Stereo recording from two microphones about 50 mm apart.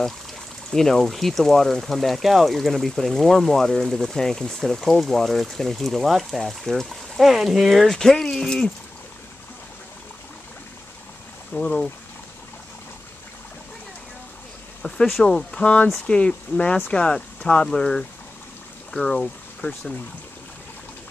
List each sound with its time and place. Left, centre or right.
0.7 s speech: centre
11.5 s speech: left
14.8 s speech: centre
19.6 s speech: left